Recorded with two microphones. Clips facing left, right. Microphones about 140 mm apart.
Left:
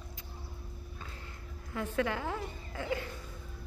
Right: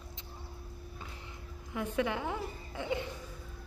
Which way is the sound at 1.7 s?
15° right (ahead or behind).